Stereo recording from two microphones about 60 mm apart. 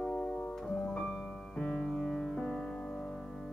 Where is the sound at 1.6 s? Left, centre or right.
Centre.